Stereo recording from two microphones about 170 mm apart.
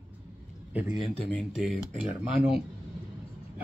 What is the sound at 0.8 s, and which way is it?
Speech, 45° left (ahead or behind).